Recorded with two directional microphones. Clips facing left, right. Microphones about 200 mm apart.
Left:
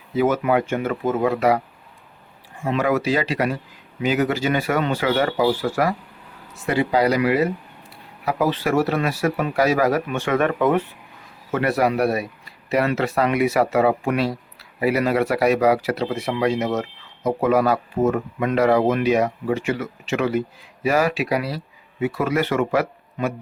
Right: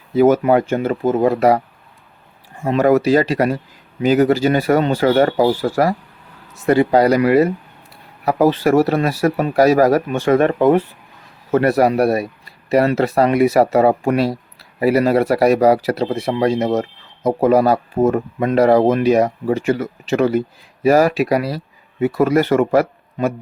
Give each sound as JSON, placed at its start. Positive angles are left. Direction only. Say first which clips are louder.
{"t": 0.2, "sound": "speech", "louder": "right 6 dB", "side_deg": -40}
{"t": 2.6, "sound": "speech", "louder": "right 7 dB", "side_deg": -40}